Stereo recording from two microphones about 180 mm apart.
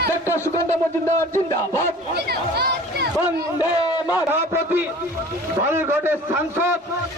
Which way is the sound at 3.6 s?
20° left (ahead or behind).